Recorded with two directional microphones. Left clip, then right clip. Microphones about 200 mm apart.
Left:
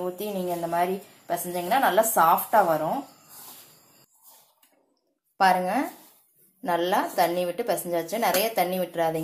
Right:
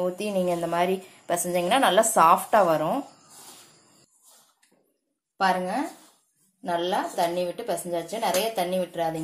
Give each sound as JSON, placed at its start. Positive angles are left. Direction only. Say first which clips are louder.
{"t": 0.0, "sound": "a woman's voice", "louder": "right 4 dB", "side_deg": -30}
{"t": 5.4, "sound": "a woman's voice", "louder": "left 3 dB", "side_deg": 15}